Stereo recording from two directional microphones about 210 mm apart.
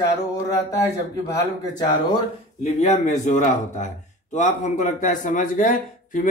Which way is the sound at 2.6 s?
30° left (ahead or behind).